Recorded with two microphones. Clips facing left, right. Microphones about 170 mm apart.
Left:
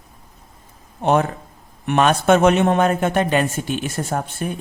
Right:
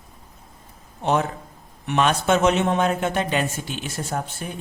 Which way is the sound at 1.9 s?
55° left (ahead or behind).